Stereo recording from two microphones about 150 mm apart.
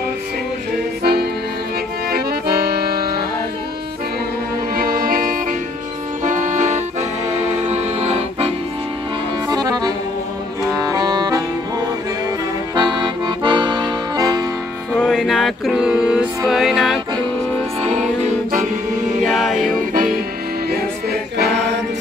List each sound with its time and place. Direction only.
2.0 s music: 90° right
4.7 s music: 75° right (ahead or behind)
6.2 s accordion: 55° right (ahead or behind)
9.5 s accordion: 25° right (ahead or behind)
10.7 s music: 25° right (ahead or behind)
12.7 s accordion: 30° right (ahead or behind)
15.0 s music: centre (ahead or behind)
17.8 s music: 50° right (ahead or behind)
19.2 s music: centre (ahead or behind)
19.8 s music: 70° right (ahead or behind)
20.7 s music: 90° right